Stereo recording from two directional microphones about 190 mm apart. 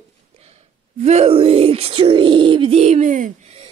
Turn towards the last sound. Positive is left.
turn(degrees=-35)  # may be behind; listen again after turning